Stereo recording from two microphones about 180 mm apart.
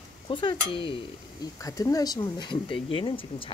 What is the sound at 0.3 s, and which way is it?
Speech, 25° left (ahead or behind).